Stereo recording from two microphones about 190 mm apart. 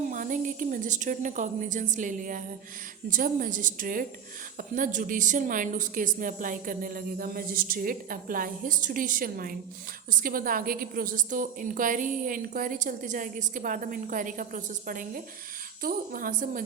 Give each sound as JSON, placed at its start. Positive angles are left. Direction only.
{"t": 0.1, "sound": "a woman's voice", "side_deg": -45}